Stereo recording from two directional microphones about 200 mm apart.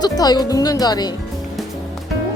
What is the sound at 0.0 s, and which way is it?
Speech, 20° left (ahead or behind).